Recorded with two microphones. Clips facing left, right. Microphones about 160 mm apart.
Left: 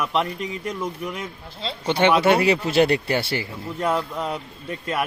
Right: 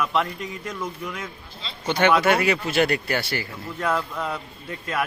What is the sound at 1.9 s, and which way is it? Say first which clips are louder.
Speech: left 2 dB; 25° left (ahead or behind).